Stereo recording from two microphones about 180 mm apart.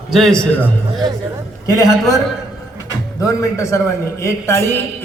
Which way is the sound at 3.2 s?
20° left (ahead or behind).